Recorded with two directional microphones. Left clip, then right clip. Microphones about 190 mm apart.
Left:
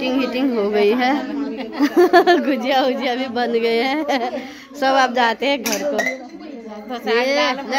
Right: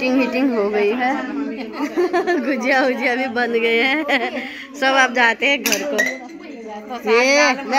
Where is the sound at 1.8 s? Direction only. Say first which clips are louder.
Left 7 dB; 35° left (ahead or behind).